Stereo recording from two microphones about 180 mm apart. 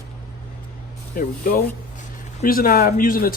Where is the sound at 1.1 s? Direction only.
50° left (ahead or behind).